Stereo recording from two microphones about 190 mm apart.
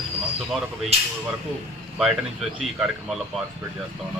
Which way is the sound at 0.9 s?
35° right (ahead or behind).